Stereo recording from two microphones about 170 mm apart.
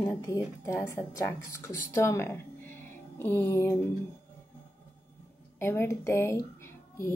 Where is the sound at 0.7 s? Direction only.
15° left (ahead or behind).